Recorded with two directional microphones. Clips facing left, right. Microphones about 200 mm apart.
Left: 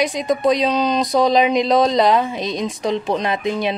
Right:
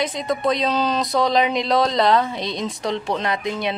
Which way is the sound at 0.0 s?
15° left (ahead or behind).